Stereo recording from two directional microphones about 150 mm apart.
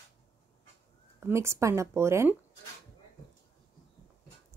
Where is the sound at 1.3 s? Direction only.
20° right (ahead or behind).